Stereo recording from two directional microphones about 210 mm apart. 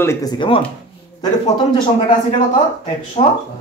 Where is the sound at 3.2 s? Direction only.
30° left (ahead or behind).